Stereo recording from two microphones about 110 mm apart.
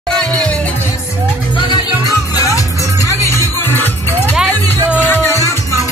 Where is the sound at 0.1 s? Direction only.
10° left (ahead or behind).